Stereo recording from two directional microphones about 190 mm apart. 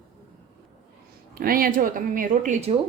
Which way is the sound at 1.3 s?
50° right (ahead or behind).